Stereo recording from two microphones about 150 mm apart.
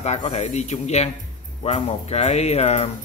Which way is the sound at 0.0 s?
50° left (ahead or behind).